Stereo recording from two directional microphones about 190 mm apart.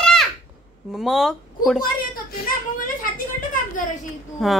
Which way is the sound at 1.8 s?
45° left (ahead or behind).